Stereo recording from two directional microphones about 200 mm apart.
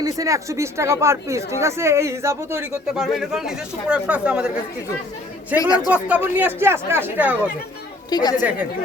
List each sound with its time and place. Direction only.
0.0 s speech: 15° right (ahead or behind)
8.1 s a woman's voice: 20° left (ahead or behind)